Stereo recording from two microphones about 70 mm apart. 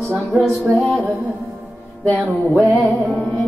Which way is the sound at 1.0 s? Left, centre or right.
Right.